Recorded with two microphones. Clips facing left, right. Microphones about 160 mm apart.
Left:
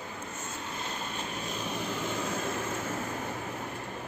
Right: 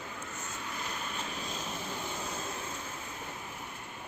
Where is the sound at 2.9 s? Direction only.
75° left (ahead or behind).